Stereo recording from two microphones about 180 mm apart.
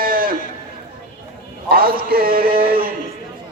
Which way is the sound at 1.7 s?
55° right (ahead or behind).